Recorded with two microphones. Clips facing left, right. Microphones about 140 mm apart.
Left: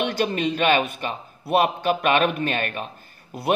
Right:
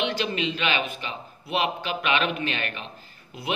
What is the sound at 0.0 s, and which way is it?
Speech, 50° left (ahead or behind).